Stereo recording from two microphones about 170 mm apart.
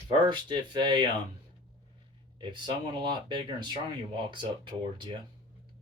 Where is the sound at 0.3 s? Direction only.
25° right (ahead or behind).